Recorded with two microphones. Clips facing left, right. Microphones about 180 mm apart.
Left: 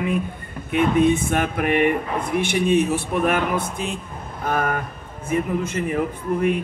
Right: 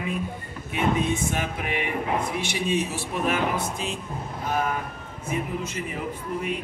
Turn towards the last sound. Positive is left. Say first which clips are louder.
# left 8 dB
turn(degrees=55)  # may be behind; listen again after turning